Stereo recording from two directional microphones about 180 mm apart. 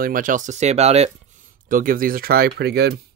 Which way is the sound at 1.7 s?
50° right (ahead or behind).